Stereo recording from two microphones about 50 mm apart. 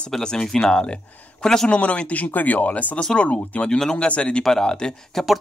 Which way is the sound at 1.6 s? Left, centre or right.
Left.